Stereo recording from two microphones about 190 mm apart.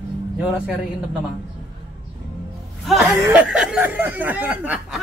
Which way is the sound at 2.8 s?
Centre (ahead or behind).